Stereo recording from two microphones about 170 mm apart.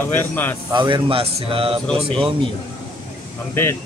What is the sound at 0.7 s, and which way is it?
Speech, 25° right (ahead or behind).